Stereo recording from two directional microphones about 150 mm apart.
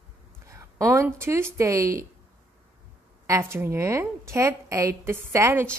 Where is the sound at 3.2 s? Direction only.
20° right (ahead or behind).